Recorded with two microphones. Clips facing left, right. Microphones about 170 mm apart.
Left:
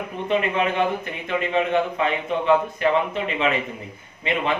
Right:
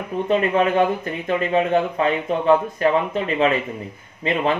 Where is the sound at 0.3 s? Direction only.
40° right (ahead or behind).